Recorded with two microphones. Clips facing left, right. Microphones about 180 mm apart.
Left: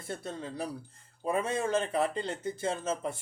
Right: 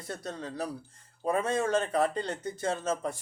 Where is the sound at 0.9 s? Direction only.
25° left (ahead or behind).